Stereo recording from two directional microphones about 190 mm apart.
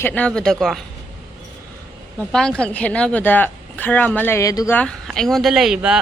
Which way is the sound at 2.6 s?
5° left (ahead or behind).